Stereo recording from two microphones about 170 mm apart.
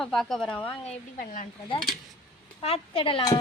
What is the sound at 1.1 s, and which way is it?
Speech, 55° left (ahead or behind).